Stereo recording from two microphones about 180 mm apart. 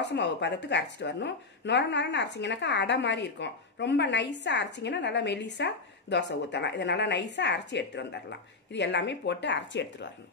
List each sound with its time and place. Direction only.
0.0 s a woman's voice: 75° left (ahead or behind)